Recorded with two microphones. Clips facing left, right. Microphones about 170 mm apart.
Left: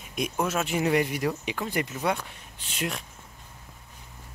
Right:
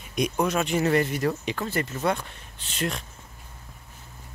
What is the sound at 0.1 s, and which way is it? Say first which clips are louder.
Speech: right 3 dB; 5° left (ahead or behind).